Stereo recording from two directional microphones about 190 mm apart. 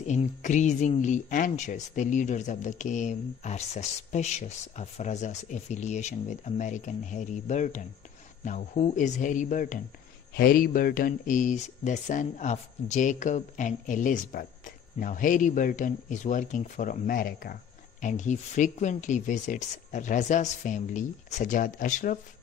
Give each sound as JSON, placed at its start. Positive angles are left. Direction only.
{"t": 0.0, "sound": "speech", "side_deg": 40}